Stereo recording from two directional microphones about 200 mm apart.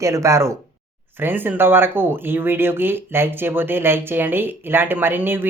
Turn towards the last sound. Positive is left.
turn(degrees=-10)  # may be behind; listen again after turning